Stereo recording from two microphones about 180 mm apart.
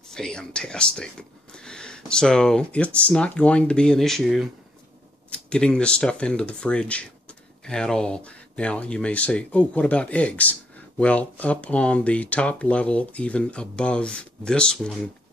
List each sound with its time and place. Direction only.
0.1 s speech: 5° left (ahead or behind)